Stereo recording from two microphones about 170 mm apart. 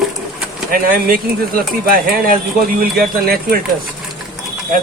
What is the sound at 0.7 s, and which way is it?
Speech, 55° right (ahead or behind).